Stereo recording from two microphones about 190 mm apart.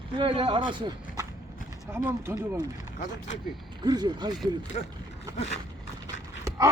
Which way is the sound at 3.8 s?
20° right (ahead or behind).